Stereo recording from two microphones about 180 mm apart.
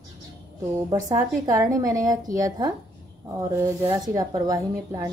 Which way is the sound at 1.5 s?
20° right (ahead or behind).